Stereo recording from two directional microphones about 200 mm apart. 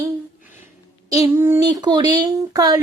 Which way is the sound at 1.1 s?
15° right (ahead or behind).